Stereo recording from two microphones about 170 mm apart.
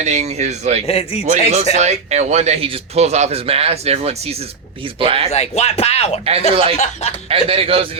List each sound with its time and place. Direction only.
0.0 s speech: 40° right (ahead or behind)
0.9 s speech: 35° left (ahead or behind)
1.2 s speech: 50° right (ahead or behind); by 5.3 s 35° right (ahead or behind)
5.3 s speech: 40° left (ahead or behind)
6.5 s speech: 30° right (ahead or behind)
6.7 s speech: 45° left (ahead or behind)
7.3 s speech: 35° right (ahead or behind)